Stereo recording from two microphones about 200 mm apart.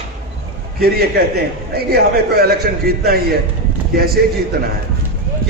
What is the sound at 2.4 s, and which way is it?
Speech, 50° right (ahead or behind).